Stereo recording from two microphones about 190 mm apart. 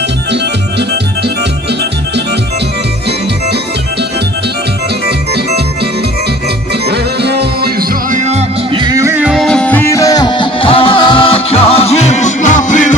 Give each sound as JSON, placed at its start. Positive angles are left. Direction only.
{"t": 6.9, "sound": "music", "side_deg": -60}
{"t": 8.2, "sound": "music", "side_deg": -35}
{"t": 8.8, "sound": "music", "side_deg": -15}